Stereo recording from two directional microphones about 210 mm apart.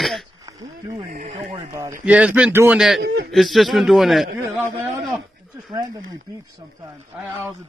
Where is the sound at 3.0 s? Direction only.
50° right (ahead or behind).